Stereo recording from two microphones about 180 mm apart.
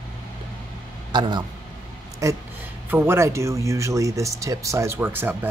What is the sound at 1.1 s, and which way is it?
Speech, 25° right (ahead or behind).